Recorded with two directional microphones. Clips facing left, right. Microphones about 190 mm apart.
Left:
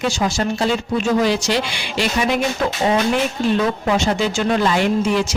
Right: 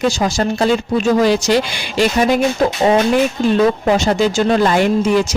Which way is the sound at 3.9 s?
40° right (ahead or behind).